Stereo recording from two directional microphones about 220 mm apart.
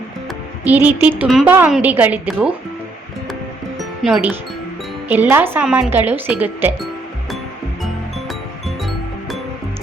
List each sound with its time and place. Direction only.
0.6 s speech: 10° right (ahead or behind)
3.8 s music: centre (ahead or behind)
5.0 s speech: 10° right (ahead or behind)
8.3 s music: centre (ahead or behind)